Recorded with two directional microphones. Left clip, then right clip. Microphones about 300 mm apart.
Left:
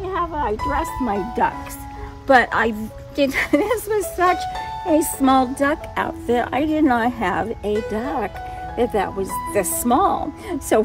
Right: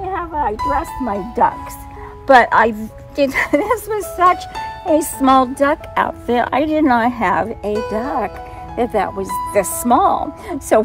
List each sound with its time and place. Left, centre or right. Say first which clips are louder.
0.0 s speech: right 3 dB; centre